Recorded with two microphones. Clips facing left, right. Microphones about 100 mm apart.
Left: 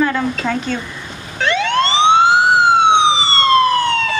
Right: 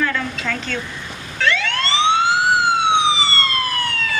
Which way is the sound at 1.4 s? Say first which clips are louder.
Left 5 dB; 20° left (ahead or behind).